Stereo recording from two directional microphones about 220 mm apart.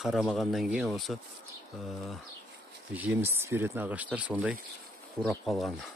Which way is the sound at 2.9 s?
5° right (ahead or behind).